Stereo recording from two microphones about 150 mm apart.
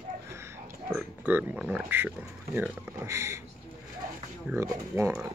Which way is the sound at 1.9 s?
15° right (ahead or behind).